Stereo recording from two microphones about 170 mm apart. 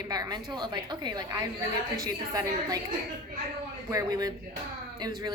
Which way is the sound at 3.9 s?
20° right (ahead or behind).